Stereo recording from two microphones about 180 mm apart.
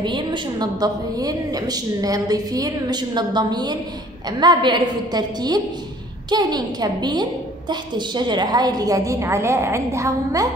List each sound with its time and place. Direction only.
0.0 s a woman's voice: 25° right (ahead or behind)